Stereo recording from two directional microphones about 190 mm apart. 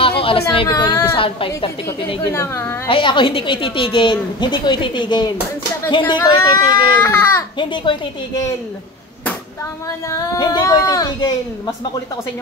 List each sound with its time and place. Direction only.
0.0 s a sound: 30° left (ahead or behind)
0.5 s a woman's voice: 25° left (ahead or behind)
2.3 s speech: 10° left (ahead or behind)
2.9 s a woman's voice: 25° left (ahead or behind)
7.0 s speech: 10° left (ahead or behind)
7.5 s a woman's voice: 25° left (ahead or behind)
10.0 s a woman's voice: 15° left (ahead or behind)